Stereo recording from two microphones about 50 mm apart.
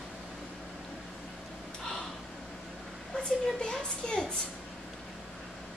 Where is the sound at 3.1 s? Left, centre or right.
Centre.